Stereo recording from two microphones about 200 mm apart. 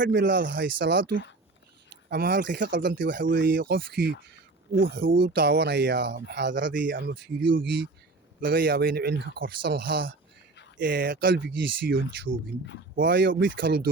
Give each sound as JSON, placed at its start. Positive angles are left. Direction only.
{"t": 0.0, "sound": "speech", "side_deg": -60}
{"t": 3.2, "sound": "speech", "side_deg": -65}
{"t": 3.4, "sound": "speech", "side_deg": -50}
{"t": 5.1, "sound": "speech", "side_deg": -60}
{"t": 6.8, "sound": "speech", "side_deg": -45}
{"t": 10.8, "sound": "speech", "side_deg": -50}
{"t": 13.6, "sound": "speech", "side_deg": -50}